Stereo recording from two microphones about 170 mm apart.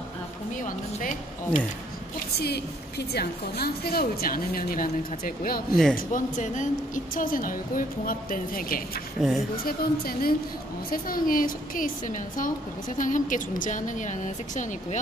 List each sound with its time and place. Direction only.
0.6 s a woman's voice: 50° left (ahead or behind)
2.3 s a woman's voice: 70° left (ahead or behind)
5.9 s a woman's voice: 50° left (ahead or behind)
9.2 s speech: centre (ahead or behind)
9.7 s a woman's voice: 60° left (ahead or behind)